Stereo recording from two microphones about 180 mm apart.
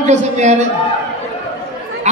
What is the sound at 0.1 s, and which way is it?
Speech, 40° right (ahead or behind).